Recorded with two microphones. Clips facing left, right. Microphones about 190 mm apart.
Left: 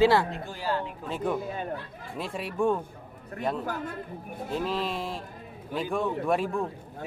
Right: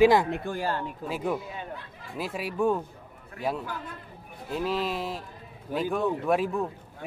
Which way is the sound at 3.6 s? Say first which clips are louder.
Left 4 dB; 45° left (ahead or behind).